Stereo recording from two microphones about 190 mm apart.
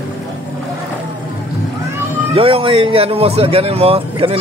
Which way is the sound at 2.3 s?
30° right (ahead or behind).